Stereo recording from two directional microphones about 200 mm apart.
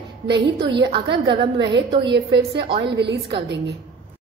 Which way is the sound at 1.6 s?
60° right (ahead or behind).